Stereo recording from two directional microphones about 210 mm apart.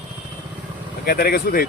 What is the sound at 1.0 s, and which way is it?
Speech, 45° left (ahead or behind).